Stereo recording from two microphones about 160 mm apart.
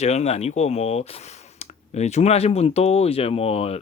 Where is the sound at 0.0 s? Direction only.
45° left (ahead or behind).